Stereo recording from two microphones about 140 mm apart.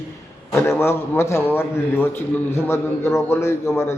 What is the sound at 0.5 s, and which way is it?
A man's voice, 20° left (ahead or behind).